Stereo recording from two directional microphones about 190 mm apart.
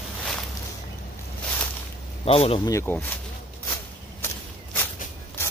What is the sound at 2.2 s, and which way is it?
Speech, 30° left (ahead or behind).